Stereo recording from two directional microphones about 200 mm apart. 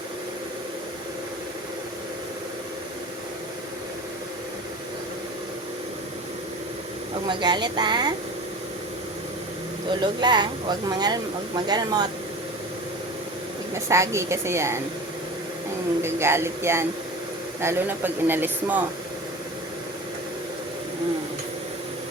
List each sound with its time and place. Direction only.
7.3 s a woman's voice: 20° right (ahead or behind)
10.0 s a woman's voice: 20° right (ahead or behind)
13.7 s speech: 15° right (ahead or behind)
16.0 s speech: 15° right (ahead or behind)